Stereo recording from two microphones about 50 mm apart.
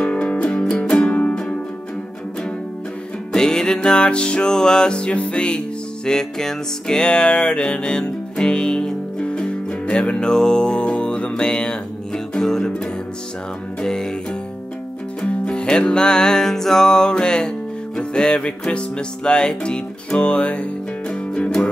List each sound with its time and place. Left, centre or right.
0.0 s music: left
3.3 s music: centre
15.2 s music: centre